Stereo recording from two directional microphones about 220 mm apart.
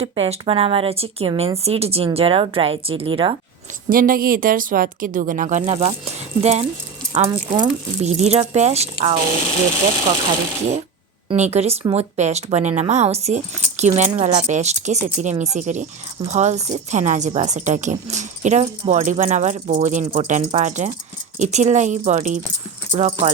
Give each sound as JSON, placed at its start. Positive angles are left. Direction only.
{"t": 0.0, "sound": "speech", "side_deg": -25}
{"t": 3.8, "sound": "a woman's voice", "side_deg": -40}
{"t": 7.1, "sound": "speech", "side_deg": -20}
{"t": 7.6, "sound": "speech", "side_deg": -30}
{"t": 11.3, "sound": "a woman's voice", "side_deg": -30}